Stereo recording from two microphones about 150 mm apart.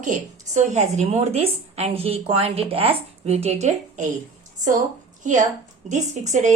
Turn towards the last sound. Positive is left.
turn(degrees=-50)  # may be behind; listen again after turning